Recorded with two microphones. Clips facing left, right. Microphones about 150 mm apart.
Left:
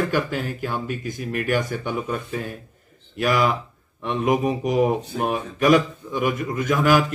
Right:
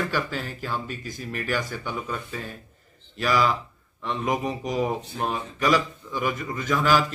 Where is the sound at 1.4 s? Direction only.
55° left (ahead or behind).